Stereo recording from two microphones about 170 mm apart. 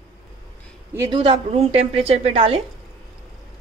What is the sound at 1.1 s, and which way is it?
A woman's voice, 35° right (ahead or behind).